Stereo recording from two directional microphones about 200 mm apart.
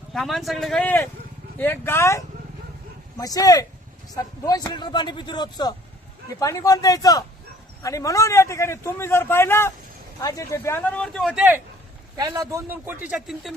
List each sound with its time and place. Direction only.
0.1 s a man's voice: centre (ahead or behind)
12.1 s speech: 15° right (ahead or behind); by 13.5 s centre (ahead or behind)